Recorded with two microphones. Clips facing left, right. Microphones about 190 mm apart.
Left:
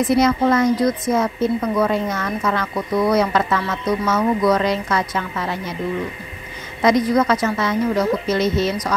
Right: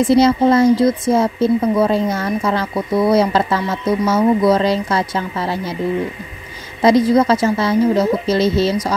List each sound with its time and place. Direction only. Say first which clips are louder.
0.0 s speech: right 4 dB; 30° right (ahead or behind)
6.8 s speech: right 4 dB; 30° right (ahead or behind)